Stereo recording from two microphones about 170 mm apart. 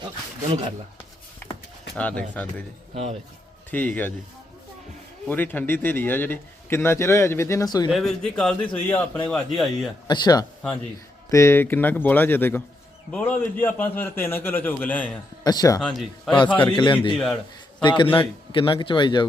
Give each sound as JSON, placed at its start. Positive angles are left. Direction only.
{"t": 2.0, "sound": "a man's voice", "side_deg": 5}
{"t": 2.9, "sound": "speech", "side_deg": -40}
{"t": 3.7, "sound": "a man's voice", "side_deg": 10}
{"t": 5.3, "sound": "a man's voice", "side_deg": 10}
{"t": 7.9, "sound": "a man's voice", "side_deg": 5}
{"t": 10.1, "sound": "a man's voice", "side_deg": 25}
{"t": 15.4, "sound": "a man's voice", "side_deg": 20}
{"t": 15.8, "sound": "a man's voice", "side_deg": 5}
{"t": 16.6, "sound": "a man's voice", "side_deg": 30}